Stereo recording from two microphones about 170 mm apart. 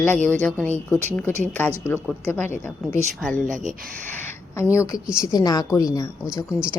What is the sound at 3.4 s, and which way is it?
Speech, 50° right (ahead or behind).